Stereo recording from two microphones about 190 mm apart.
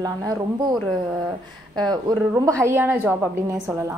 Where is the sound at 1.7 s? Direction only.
20° right (ahead or behind).